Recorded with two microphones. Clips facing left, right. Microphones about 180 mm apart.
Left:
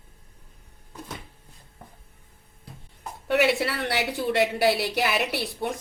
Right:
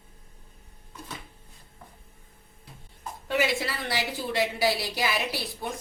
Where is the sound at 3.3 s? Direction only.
70° left (ahead or behind).